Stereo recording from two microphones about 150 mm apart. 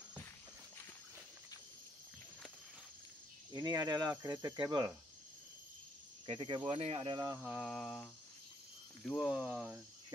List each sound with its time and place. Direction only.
3.6 s speech: 25° right (ahead or behind)
6.2 s speech: 35° right (ahead or behind)
7.4 s speech: 5° right (ahead or behind)